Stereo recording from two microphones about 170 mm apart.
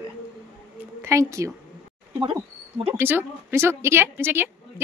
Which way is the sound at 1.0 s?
15° right (ahead or behind).